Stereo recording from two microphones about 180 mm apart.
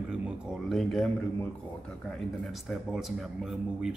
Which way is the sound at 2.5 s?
Centre (ahead or behind).